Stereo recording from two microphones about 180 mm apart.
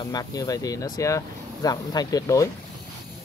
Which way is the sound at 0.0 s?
20° left (ahead or behind).